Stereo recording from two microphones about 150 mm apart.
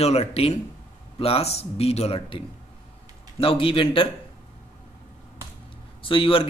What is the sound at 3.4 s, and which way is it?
Speech, 35° left (ahead or behind).